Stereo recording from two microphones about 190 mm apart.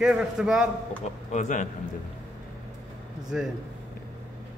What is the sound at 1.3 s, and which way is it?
Speech, 40° left (ahead or behind).